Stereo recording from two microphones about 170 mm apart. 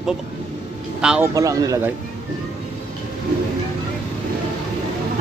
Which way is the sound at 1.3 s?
20° right (ahead or behind).